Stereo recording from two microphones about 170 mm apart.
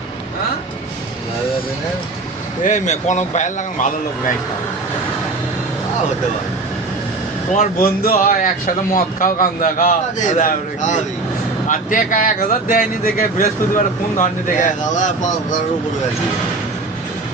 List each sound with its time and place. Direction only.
2.6 s speech: 45° left (ahead or behind)
7.5 s speech: 55° left (ahead or behind)